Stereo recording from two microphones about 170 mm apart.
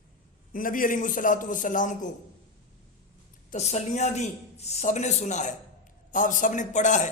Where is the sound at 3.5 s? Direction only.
40° left (ahead or behind).